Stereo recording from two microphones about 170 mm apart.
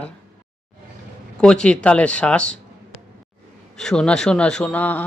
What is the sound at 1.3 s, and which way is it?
Speech, 5° left (ahead or behind).